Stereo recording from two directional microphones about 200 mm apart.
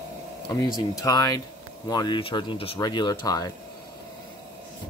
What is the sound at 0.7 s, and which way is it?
Speech, 20° left (ahead or behind).